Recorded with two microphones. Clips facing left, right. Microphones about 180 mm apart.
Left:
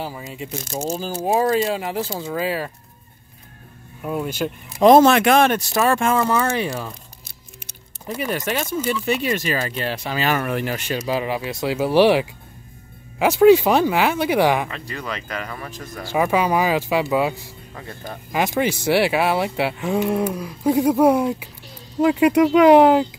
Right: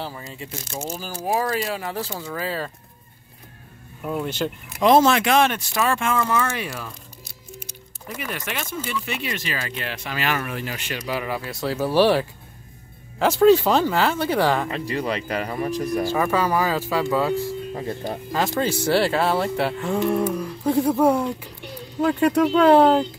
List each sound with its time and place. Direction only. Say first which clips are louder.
0.3 s speech: left 4 dB; 20° left (ahead or behind)
0.7 s speech: left 6 dB; 35° left (ahead or behind); by 2.7 s 15° left (ahead or behind)
4.0 s speech: left 1 dB; 5° left (ahead or behind)
4.8 s speech: left 4 dB; 55° left (ahead or behind)
6.2 s speech: left 4 dB; 30° left (ahead or behind)
8.1 s speech: left 7 dB; 35° left (ahead or behind)
10.4 s speech: left 6 dB; 55° left (ahead or behind)
10.9 s speech: left 3 dB; 25° left (ahead or behind)
14.7 s speech: right 5 dB; 30° right (ahead or behind)
16.1 s speech: left 6 dB; 15° left (ahead or behind)
17.7 s speech: right 6 dB; 30° right (ahead or behind)
18.3 s speech: left 3 dB; 15° left (ahead or behind)